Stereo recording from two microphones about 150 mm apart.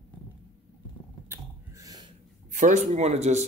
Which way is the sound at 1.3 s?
25° right (ahead or behind).